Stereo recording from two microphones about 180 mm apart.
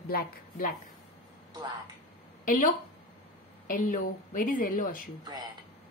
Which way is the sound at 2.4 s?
45° left (ahead or behind).